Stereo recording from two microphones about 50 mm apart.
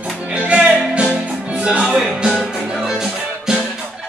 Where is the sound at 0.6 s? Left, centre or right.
Right.